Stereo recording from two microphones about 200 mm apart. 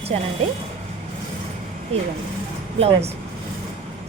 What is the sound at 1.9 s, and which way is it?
Speech, 30° right (ahead or behind).